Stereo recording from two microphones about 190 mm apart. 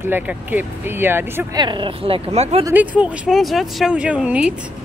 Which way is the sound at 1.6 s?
25° right (ahead or behind).